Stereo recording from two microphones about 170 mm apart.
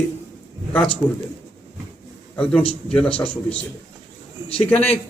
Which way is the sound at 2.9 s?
5° left (ahead or behind).